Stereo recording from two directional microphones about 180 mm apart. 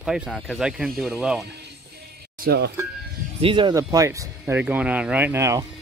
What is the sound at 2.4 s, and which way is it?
Speech, 65° right (ahead or behind).